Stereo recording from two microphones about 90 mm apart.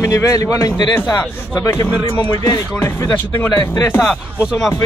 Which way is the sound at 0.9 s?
20° left (ahead or behind).